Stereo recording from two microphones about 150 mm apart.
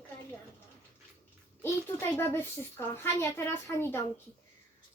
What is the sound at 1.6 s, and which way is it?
A child's voice, 15° left (ahead or behind).